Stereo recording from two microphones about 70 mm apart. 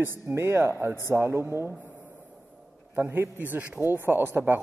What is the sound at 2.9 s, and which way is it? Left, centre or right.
A man's voice, right.